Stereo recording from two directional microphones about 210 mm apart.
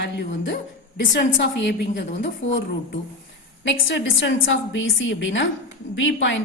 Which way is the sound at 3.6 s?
60° left (ahead or behind).